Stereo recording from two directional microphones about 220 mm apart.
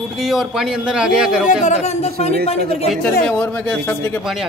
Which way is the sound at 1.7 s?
30° left (ahead or behind).